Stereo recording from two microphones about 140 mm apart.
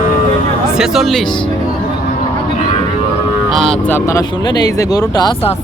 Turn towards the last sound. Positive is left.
turn(degrees=30)  # may be behind; listen again after turning